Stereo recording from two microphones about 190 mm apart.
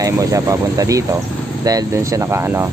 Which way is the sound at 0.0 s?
15° right (ahead or behind).